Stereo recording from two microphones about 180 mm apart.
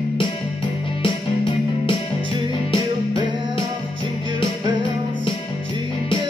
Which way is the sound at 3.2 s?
25° right (ahead or behind).